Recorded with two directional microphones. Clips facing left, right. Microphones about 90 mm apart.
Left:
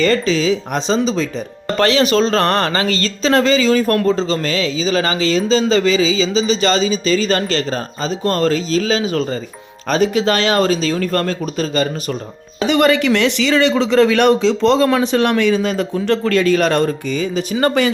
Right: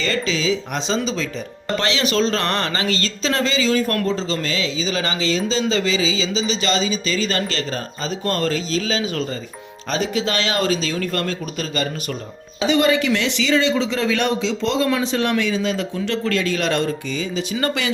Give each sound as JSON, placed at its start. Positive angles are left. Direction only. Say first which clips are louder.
{"t": 0.0, "sound": "speech", "louder": "left 7 dB", "side_deg": 45}
{"t": 12.5, "sound": "speech", "louder": "left 3 dB", "side_deg": 60}